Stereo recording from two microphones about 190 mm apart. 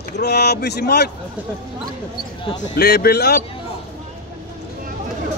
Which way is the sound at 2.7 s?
55° left (ahead or behind).